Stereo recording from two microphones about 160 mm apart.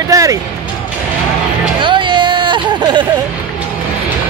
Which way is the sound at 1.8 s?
30° right (ahead or behind).